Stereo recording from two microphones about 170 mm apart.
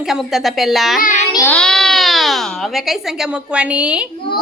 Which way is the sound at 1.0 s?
50° left (ahead or behind).